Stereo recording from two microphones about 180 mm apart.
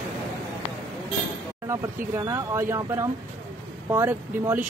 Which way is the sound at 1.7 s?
15° right (ahead or behind).